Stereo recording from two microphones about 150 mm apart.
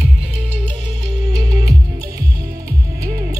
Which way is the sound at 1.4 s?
25° right (ahead or behind).